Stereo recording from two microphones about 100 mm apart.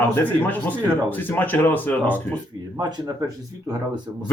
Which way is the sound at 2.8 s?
45° right (ahead or behind).